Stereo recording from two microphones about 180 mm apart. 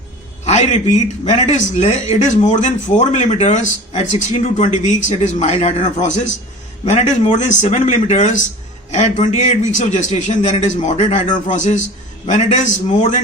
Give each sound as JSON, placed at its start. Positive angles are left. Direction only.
{"t": 0.4, "sound": "a man's voice", "side_deg": 40}
{"t": 11.4, "sound": "a man's voice", "side_deg": 45}